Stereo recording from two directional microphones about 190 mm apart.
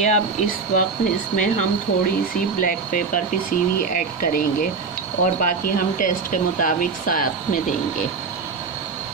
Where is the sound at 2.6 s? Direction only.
45° left (ahead or behind).